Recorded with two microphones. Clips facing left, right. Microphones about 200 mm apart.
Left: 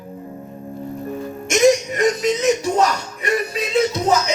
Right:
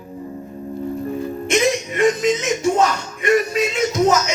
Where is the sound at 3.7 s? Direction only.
35° left (ahead or behind).